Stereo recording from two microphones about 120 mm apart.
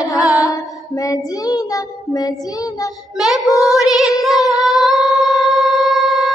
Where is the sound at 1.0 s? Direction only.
30° left (ahead or behind).